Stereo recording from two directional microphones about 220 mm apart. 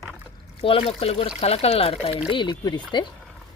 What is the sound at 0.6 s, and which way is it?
Speech, 25° left (ahead or behind).